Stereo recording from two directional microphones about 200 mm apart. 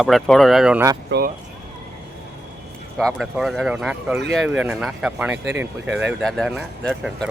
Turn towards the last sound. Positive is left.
turn(degrees=5)  # may be behind; listen again after turning